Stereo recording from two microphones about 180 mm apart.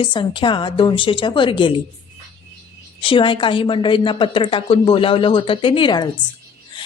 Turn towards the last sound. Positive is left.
turn(degrees=25)  # may be behind; listen again after turning